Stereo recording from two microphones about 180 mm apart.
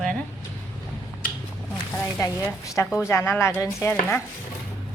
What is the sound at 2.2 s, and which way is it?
Speech, 15° left (ahead or behind).